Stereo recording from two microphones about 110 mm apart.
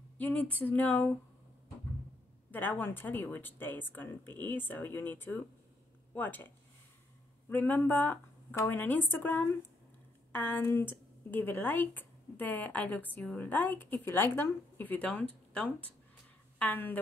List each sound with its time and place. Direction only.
0.2 s speech: 15° left (ahead or behind)
2.5 s speech: 15° left (ahead or behind)